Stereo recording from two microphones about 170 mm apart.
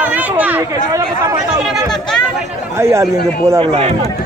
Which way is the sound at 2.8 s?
15° right (ahead or behind).